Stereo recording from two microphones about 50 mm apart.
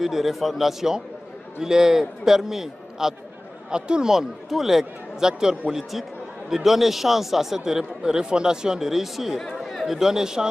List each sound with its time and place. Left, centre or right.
0.0 s a man's voice: centre
9.7 s chatter: centre
9.9 s speech: centre